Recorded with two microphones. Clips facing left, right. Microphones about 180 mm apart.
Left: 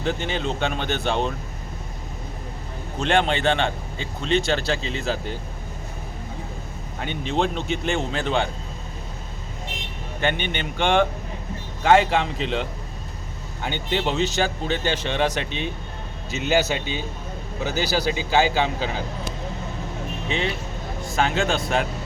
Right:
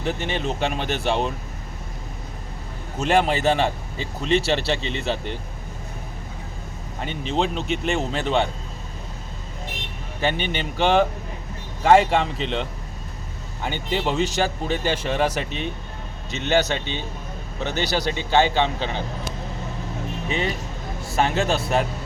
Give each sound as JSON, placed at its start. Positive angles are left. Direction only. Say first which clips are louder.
{"t": 0.0, "sound": "speech", "louder": "even", "side_deg": 0}
{"t": 3.0, "sound": "speech", "louder": "right 1 dB", "side_deg": -5}
{"t": 7.0, "sound": "speech", "louder": "even", "side_deg": 0}
{"t": 10.3, "sound": "a man's voice", "louder": "right 1 dB", "side_deg": -35}
{"t": 10.6, "sound": "speech", "louder": "right 1 dB", "side_deg": -5}
{"t": 21.0, "sound": "speech", "louder": "right 1 dB", "side_deg": -5}